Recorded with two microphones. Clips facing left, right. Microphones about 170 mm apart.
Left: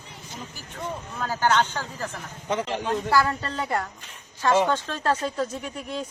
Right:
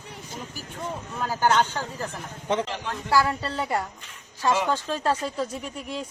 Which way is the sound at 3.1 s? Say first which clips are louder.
Right 3 dB; 10° right (ahead or behind).